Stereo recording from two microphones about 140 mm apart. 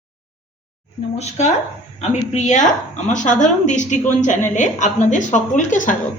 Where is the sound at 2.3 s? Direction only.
60° left (ahead or behind).